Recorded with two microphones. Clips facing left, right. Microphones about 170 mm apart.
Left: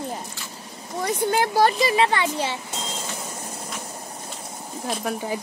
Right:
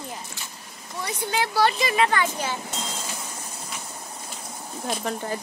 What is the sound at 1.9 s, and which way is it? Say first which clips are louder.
Speech: left 2 dB; 25° left (ahead or behind).